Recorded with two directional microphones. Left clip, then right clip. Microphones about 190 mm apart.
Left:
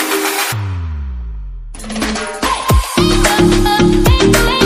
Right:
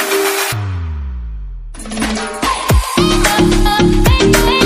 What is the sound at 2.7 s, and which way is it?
Music, centre (ahead or behind).